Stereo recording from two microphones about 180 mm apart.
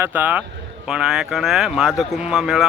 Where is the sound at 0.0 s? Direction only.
10° right (ahead or behind).